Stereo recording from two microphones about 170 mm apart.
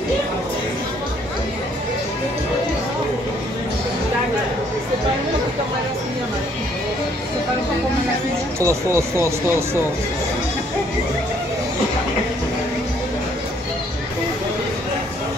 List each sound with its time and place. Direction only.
8.5 s speech: 15° right (ahead or behind)